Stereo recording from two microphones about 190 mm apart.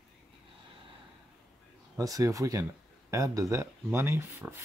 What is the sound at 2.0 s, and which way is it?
Speech, 20° right (ahead or behind).